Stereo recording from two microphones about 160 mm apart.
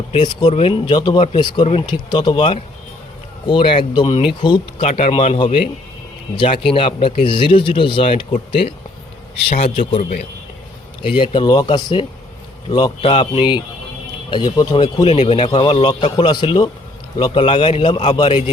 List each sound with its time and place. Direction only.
0.1 s speech: 30° left (ahead or behind)
4.8 s speech: 40° left (ahead or behind)
10.0 s a man's voice: 60° left (ahead or behind)
11.0 s speech: 30° left (ahead or behind)